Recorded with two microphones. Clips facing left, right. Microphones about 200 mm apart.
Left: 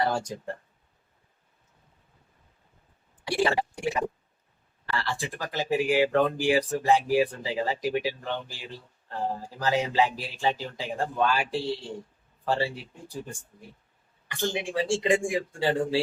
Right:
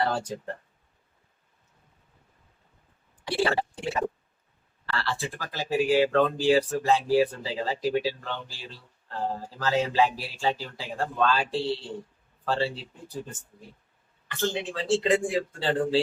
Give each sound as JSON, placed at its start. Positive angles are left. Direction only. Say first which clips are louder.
{"t": 3.2, "sound": "speech", "louder": "left 1 dB", "side_deg": 15}
{"t": 14.3, "sound": "speech", "louder": "right 1 dB", "side_deg": 15}